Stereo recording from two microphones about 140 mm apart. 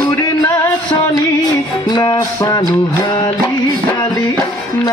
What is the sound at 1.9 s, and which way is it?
Music, 30° left (ahead or behind).